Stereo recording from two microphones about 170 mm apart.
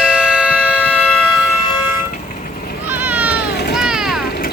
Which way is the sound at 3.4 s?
70° left (ahead or behind).